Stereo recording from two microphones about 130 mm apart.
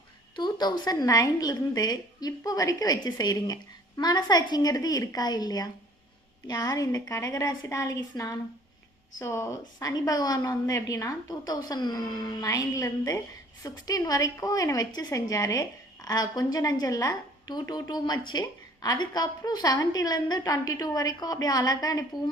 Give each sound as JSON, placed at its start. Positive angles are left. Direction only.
{"t": 0.3, "sound": "a woman's voice", "side_deg": 35}